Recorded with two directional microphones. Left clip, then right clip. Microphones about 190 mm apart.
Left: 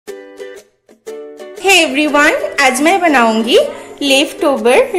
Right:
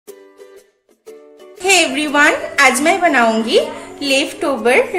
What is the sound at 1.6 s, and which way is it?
A woman's voice, 25° left (ahead or behind).